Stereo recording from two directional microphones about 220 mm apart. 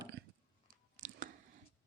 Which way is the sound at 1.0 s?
35° right (ahead or behind).